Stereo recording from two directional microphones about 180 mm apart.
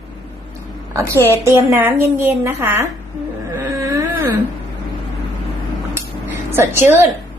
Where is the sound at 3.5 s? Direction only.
15° right (ahead or behind).